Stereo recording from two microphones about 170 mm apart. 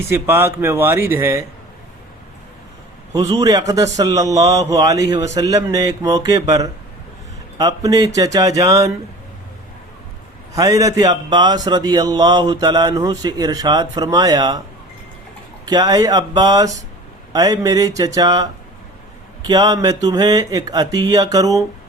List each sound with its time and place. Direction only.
0.1 s speech: 15° right (ahead or behind)
3.1 s a man's voice: 20° right (ahead or behind)
10.5 s a man's voice: 20° right (ahead or behind)
15.6 s a man's voice: 25° right (ahead or behind)